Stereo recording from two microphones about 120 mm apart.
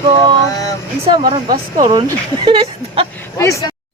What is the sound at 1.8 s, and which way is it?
Speech, 40° right (ahead or behind).